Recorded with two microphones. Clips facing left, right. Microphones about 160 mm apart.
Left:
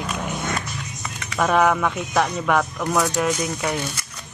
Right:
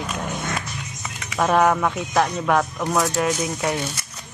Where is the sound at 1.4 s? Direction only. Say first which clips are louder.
Even; 5° right (ahead or behind).